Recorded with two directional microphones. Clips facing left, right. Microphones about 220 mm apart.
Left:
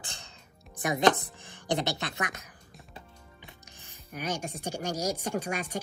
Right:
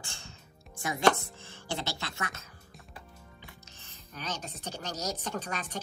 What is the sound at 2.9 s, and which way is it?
Speech, 20° left (ahead or behind).